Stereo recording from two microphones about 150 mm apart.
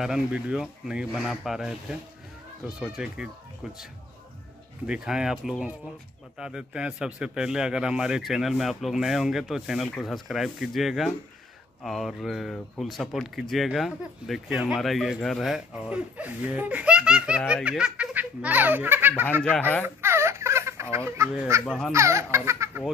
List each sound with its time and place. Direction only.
0.0 s speech: 5° right (ahead or behind)
4.8 s speech: 5° right (ahead or behind)
20.0 s a sound: 15° right (ahead or behind)
21.6 s speech: 5° left (ahead or behind)
21.9 s speech: 20° right (ahead or behind)